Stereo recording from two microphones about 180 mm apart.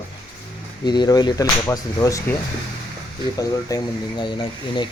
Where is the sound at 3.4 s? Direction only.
20° left (ahead or behind).